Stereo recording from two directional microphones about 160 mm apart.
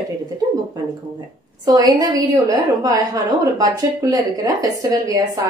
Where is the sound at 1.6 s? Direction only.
25° right (ahead or behind).